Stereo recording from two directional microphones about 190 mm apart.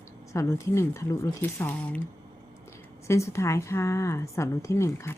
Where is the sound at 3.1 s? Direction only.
15° left (ahead or behind).